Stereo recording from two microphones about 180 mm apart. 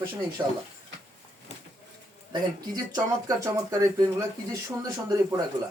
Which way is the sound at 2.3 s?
20° right (ahead or behind).